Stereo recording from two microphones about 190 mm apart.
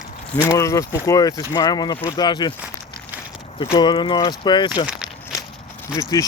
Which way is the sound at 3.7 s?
20° left (ahead or behind).